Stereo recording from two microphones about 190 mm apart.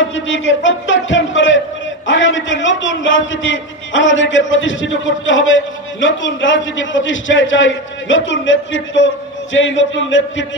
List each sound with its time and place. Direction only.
0.1 s a man's voice: 85° left